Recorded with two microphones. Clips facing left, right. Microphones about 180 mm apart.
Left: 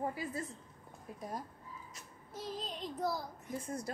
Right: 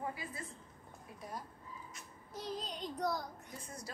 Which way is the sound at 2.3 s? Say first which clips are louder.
Even; centre (ahead or behind).